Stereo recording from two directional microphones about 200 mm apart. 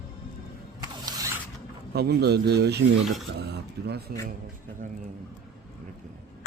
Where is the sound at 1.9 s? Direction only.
55° right (ahead or behind).